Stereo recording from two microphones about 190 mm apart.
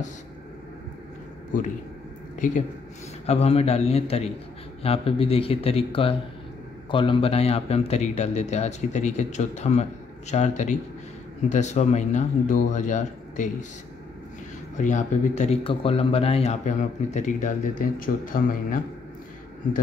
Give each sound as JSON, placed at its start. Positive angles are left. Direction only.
{"t": 3.3, "sound": "speech", "side_deg": 35}
{"t": 14.8, "sound": "speech", "side_deg": 40}